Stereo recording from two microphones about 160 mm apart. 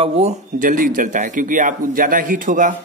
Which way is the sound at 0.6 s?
60° right (ahead or behind).